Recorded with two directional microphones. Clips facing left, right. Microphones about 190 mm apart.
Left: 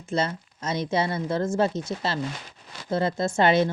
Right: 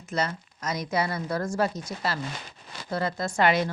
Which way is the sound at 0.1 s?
25° left (ahead or behind).